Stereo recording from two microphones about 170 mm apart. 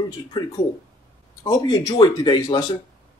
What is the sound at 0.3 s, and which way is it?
A man's voice, 25° left (ahead or behind).